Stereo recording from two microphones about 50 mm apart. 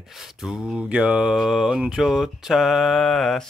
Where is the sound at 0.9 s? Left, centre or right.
Right.